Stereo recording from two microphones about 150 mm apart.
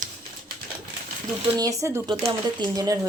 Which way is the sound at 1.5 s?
20° right (ahead or behind).